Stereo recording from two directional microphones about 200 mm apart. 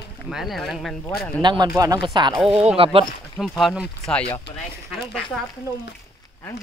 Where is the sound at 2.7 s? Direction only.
25° right (ahead or behind).